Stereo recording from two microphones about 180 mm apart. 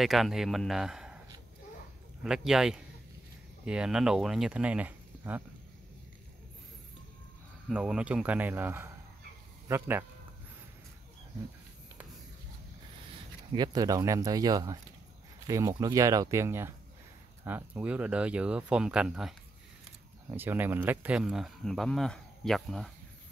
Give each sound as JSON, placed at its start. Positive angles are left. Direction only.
{"t": 0.0, "sound": "speech", "side_deg": 0}
{"t": 2.2, "sound": "speech", "side_deg": -5}
{"t": 7.6, "sound": "speech", "side_deg": -5}
{"t": 13.6, "sound": "speech", "side_deg": -20}